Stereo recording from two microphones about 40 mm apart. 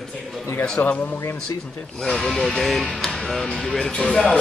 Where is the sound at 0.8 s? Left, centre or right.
Left.